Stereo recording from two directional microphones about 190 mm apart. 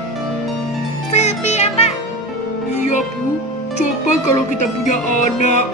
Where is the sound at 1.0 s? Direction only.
35° left (ahead or behind).